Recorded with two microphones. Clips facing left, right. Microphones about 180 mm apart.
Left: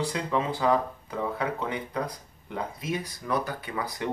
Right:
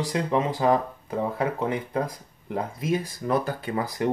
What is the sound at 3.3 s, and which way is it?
Speech, 30° right (ahead or behind).